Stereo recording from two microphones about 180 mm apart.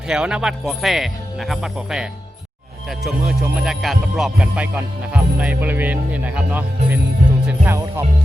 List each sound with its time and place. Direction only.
0.1 s speech: 5° right (ahead or behind)
7.4 s music: 10° right (ahead or behind)